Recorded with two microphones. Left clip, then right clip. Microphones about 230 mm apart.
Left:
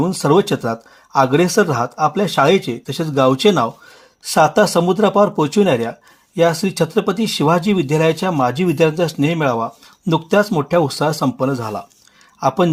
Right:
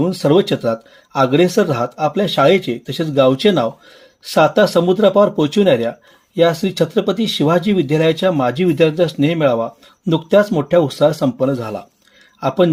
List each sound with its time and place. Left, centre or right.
0.0 s speech: left